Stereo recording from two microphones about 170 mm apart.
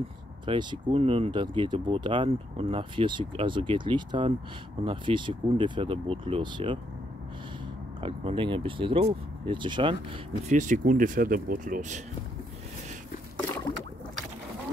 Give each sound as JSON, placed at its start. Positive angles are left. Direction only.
{"t": 0.5, "sound": "speech", "side_deg": -25}
{"t": 8.0, "sound": "speech", "side_deg": -30}
{"t": 10.5, "sound": "speech", "side_deg": -45}